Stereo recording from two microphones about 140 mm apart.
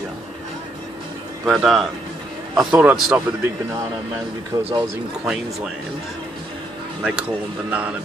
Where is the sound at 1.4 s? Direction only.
Centre (ahead or behind).